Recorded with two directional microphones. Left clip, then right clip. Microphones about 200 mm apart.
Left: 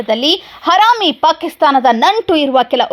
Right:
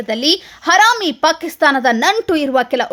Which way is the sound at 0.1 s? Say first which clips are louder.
Left 3 dB; centre (ahead or behind).